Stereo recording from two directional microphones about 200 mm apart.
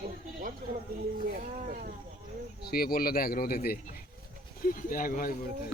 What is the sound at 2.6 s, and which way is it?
A child's voice, 50° left (ahead or behind).